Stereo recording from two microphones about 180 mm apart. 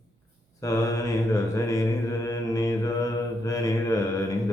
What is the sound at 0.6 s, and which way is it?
Mantra, 20° left (ahead or behind).